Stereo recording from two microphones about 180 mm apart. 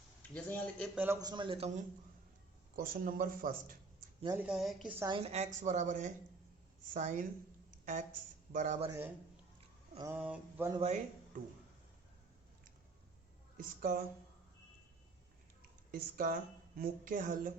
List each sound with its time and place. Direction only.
0.2 s a man's voice: 10° left (ahead or behind)
0.9 s a man's voice: 15° right (ahead or behind); by 1.8 s 35° right (ahead or behind)
2.7 s speech: 55° right (ahead or behind)
4.4 s a woman's voice: 5° right (ahead or behind)
4.9 s a man's voice: 20° right (ahead or behind)
5.2 s speech: 35° right (ahead or behind)
8.5 s speech: 45° right (ahead or behind)
8.9 s a sound: 10° right (ahead or behind)
13.6 s speech: 50° right (ahead or behind)
15.9 s speech: 50° right (ahead or behind)